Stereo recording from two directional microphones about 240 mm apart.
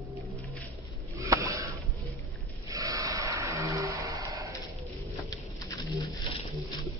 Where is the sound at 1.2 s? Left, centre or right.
Centre.